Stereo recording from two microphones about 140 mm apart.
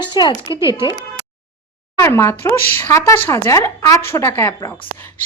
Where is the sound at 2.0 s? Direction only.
20° left (ahead or behind).